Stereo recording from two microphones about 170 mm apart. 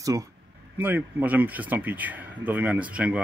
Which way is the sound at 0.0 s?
20° right (ahead or behind).